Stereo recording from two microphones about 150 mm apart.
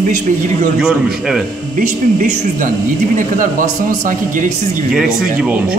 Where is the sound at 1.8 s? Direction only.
65° right (ahead or behind).